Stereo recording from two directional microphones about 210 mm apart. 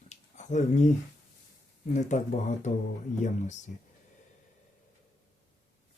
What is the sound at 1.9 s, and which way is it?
Speech, 35° left (ahead or behind).